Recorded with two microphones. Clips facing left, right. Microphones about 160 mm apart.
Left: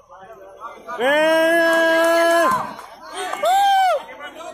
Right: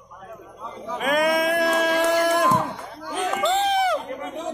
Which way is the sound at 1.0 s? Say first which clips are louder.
Left 6 dB; 60° left (ahead or behind).